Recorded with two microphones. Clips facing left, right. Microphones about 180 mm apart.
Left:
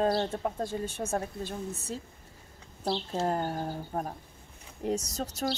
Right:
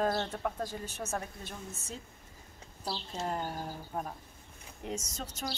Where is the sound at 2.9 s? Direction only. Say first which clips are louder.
Left 7 dB; 60° left (ahead or behind).